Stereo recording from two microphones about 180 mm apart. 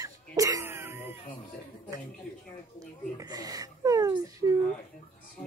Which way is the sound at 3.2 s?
20° right (ahead or behind).